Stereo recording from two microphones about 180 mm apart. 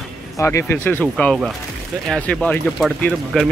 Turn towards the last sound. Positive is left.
turn(degrees=5)  # may be behind; listen again after turning